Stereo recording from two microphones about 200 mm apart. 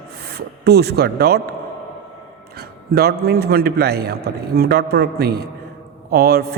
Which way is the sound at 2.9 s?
50° right (ahead or behind).